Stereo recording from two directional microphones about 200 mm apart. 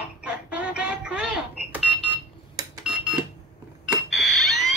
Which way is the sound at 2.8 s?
5° right (ahead or behind).